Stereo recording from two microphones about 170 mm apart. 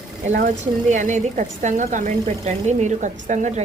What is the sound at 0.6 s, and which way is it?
A woman's voice, 45° right (ahead or behind).